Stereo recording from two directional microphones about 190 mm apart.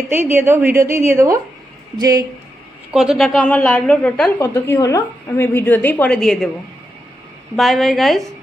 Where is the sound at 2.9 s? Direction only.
5° right (ahead or behind).